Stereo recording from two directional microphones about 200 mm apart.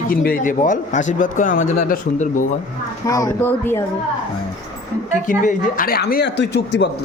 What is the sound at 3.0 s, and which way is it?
Speech, 15° left (ahead or behind).